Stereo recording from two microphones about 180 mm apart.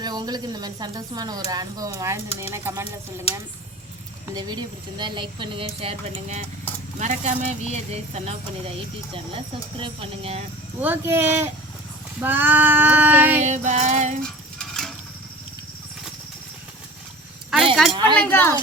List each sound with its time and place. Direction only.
0.0 s a woman's voice: 20° right (ahead or behind)
2.4 s female singing: 15° right (ahead or behind)
4.4 s a woman's voice: 25° right (ahead or behind)
10.8 s female singing: 10° right (ahead or behind)
13.4 s speech: 40° right (ahead or behind)
14.2 s dog: 5° left (ahead or behind)
17.9 s a woman's voice: 25° right (ahead or behind)
18.2 s speech: 10° left (ahead or behind)